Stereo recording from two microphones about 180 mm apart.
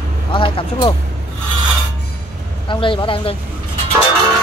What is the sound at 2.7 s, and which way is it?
Speech, 25° left (ahead or behind).